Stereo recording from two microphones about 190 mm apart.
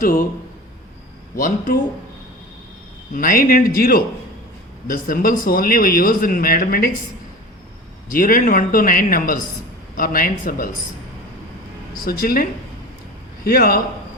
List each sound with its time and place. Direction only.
0.0 s speech: 45° left (ahead or behind)
1.4 s speech: 45° left (ahead or behind)
3.1 s speech: 45° left (ahead or behind)
8.1 s speech: 45° left (ahead or behind)
11.9 s speech: 50° left (ahead or behind)